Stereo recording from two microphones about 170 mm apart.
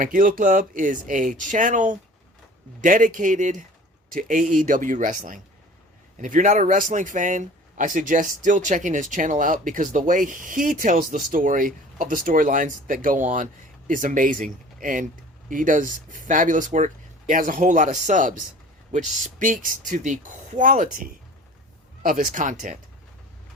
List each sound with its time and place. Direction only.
0.0 s speech: 55° right (ahead or behind)